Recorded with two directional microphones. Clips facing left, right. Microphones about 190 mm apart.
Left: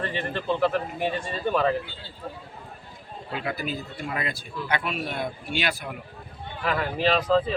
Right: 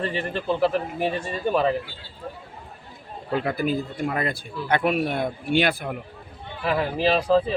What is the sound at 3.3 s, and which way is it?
Speech, 50° right (ahead or behind).